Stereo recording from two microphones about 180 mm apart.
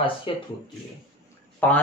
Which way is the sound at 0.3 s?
30° left (ahead or behind).